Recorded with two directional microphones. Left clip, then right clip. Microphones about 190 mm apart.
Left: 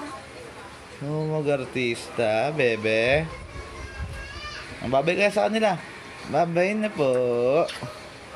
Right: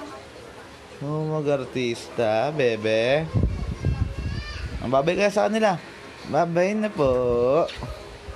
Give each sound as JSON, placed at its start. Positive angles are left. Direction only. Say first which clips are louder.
{"t": 1.0, "sound": "speech", "louder": "even", "side_deg": -15}
{"t": 4.8, "sound": "speech", "louder": "right 1 dB", "side_deg": -15}